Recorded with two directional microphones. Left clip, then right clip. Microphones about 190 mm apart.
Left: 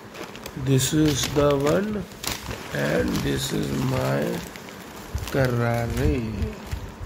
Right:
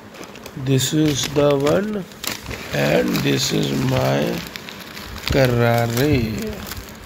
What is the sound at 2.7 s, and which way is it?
Speech, 20° right (ahead or behind).